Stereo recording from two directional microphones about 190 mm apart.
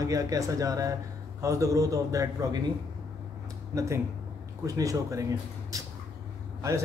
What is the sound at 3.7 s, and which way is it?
A man's voice, 15° right (ahead or behind).